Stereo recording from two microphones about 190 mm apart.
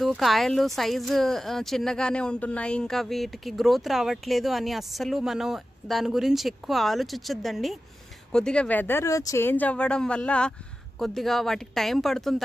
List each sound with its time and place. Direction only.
0.0 s speech: centre (ahead or behind)